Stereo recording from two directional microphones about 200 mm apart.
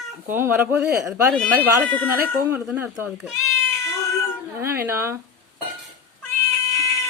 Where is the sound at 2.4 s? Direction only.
10° right (ahead or behind).